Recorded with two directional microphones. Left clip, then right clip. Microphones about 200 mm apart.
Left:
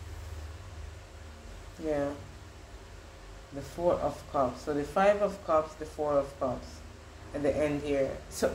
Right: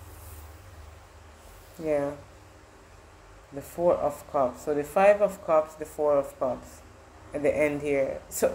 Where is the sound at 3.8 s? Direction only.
25° right (ahead or behind).